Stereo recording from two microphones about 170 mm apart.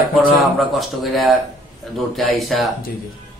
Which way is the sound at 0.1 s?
Centre (ahead or behind).